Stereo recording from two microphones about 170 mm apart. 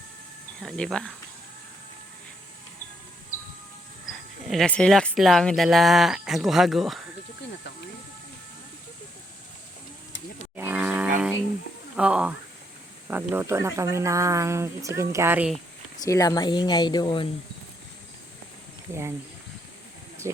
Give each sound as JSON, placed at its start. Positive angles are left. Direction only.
{"t": 0.6, "sound": "speech", "side_deg": 0}
{"t": 4.4, "sound": "speech", "side_deg": 5}
{"t": 10.6, "sound": "cattle", "side_deg": -10}
{"t": 11.9, "sound": "speech", "side_deg": -5}
{"t": 16.0, "sound": "speech", "side_deg": 20}
{"t": 18.9, "sound": "speech", "side_deg": -15}
{"t": 20.2, "sound": "speech", "side_deg": -15}